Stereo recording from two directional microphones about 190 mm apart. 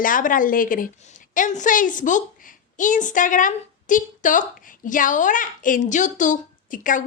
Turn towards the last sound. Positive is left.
turn(degrees=45)  # may be behind; listen again after turning